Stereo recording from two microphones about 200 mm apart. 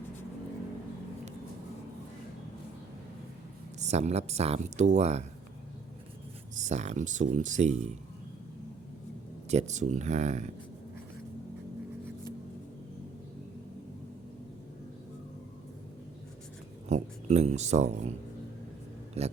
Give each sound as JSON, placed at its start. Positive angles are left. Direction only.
{"t": 3.8, "sound": "speech", "side_deg": -35}
{"t": 6.6, "sound": "speech", "side_deg": -35}
{"t": 9.5, "sound": "speech", "side_deg": -35}
{"t": 16.9, "sound": "speech", "side_deg": -35}
{"t": 19.2, "sound": "speech", "side_deg": -30}